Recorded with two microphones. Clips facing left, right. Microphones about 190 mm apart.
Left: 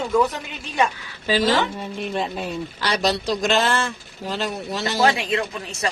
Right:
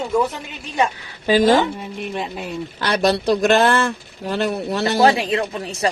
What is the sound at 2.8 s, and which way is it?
Speech, 55° right (ahead or behind).